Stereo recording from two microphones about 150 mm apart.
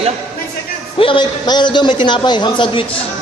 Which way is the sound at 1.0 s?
35° left (ahead or behind).